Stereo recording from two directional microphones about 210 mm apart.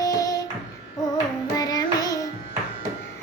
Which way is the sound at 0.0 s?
15° left (ahead or behind).